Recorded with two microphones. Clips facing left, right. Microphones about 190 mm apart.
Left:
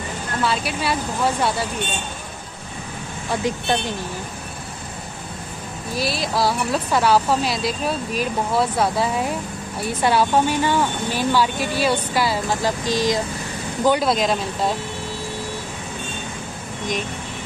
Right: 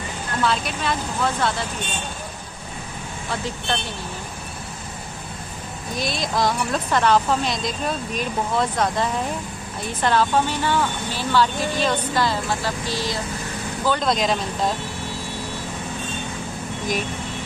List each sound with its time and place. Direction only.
0.4 s speech: 5° left (ahead or behind)
3.3 s speech: 15° left (ahead or behind)
5.9 s speech: 5° left (ahead or behind)